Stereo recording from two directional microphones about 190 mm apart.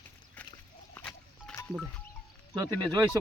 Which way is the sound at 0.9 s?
10° left (ahead or behind).